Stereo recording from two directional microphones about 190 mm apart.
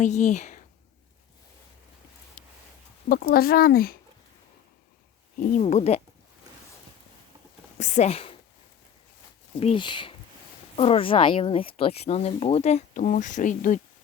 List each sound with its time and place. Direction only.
0.0 s speech: 40° left (ahead or behind)
2.4 s a sound: 40° left (ahead or behind)
3.1 s speech: 50° left (ahead or behind)
5.4 s speech: 45° left (ahead or behind)
7.8 s speech: 35° left (ahead or behind)
9.6 s speech: 30° left (ahead or behind)